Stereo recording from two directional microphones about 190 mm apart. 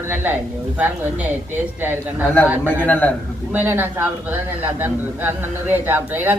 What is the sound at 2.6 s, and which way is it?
Speech, 10° left (ahead or behind).